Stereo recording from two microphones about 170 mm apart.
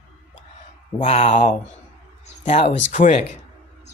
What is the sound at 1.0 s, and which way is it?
Speech, 40° left (ahead or behind).